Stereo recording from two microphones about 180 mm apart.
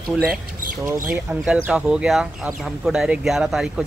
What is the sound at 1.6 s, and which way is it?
Speech, 5° right (ahead or behind).